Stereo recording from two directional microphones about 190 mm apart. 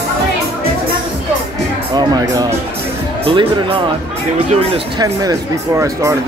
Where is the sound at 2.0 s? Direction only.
20° right (ahead or behind).